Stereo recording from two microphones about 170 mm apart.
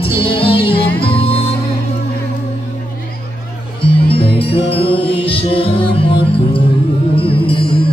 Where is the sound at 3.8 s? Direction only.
35° left (ahead or behind).